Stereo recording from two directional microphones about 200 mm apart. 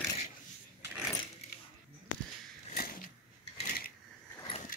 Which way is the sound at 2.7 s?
45° left (ahead or behind).